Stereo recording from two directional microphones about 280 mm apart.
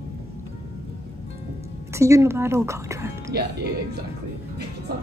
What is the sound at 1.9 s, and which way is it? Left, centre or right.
Speech, centre.